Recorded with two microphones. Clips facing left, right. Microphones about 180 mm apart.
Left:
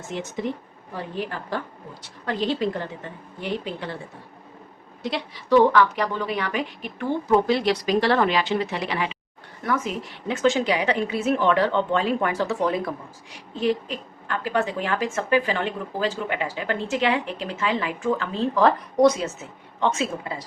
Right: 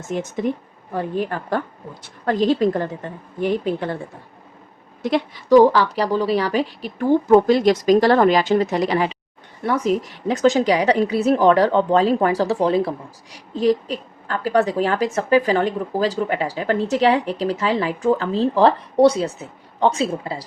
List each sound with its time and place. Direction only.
0.1 s a woman's voice: 50° right (ahead or behind)
5.0 s a woman's voice: 45° right (ahead or behind)